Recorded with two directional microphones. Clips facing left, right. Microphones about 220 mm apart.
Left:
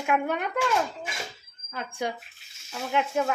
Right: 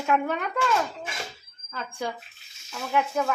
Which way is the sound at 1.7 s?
20° left (ahead or behind).